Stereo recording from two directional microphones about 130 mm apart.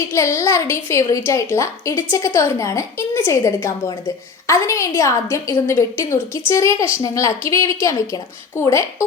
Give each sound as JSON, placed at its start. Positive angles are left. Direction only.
{"t": 0.1, "sound": "a woman's voice", "side_deg": 20}